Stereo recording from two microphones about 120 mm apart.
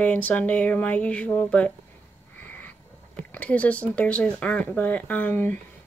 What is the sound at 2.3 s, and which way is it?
Frog, 15° left (ahead or behind).